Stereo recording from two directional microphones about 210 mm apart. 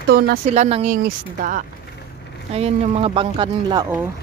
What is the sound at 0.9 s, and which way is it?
Speech, 40° right (ahead or behind).